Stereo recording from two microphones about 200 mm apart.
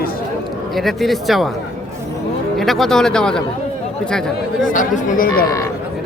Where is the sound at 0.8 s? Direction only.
Centre (ahead or behind).